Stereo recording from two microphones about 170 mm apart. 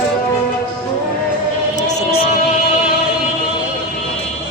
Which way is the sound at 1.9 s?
40° left (ahead or behind).